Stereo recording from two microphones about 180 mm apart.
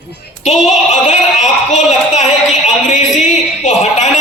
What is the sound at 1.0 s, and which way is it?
A man's voice, 40° left (ahead or behind).